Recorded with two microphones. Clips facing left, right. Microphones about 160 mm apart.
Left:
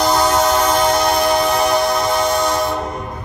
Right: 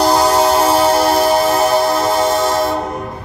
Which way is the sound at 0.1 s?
30° right (ahead or behind).